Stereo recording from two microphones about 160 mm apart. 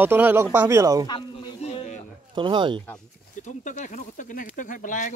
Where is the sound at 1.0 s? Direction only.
30° left (ahead or behind).